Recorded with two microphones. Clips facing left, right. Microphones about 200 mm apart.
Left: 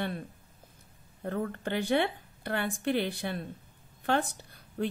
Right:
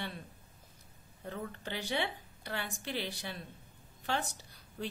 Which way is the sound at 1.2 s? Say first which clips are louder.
Left 8 dB; 55° left (ahead or behind).